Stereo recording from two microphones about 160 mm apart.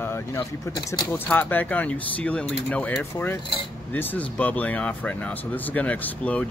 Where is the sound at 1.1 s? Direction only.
15° left (ahead or behind).